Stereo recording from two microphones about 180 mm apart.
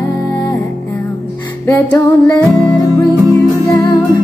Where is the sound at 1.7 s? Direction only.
15° left (ahead or behind).